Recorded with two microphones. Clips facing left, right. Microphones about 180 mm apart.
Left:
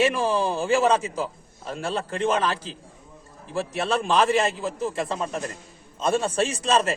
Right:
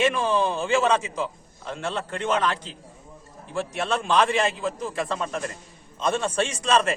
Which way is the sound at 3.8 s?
30° left (ahead or behind).